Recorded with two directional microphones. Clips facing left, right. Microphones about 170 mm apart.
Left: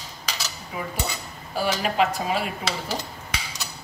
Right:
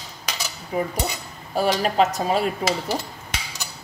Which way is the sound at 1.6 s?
40° right (ahead or behind).